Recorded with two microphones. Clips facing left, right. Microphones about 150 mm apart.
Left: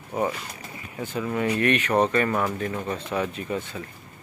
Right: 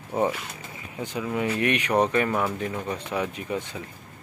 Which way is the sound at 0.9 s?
15° right (ahead or behind).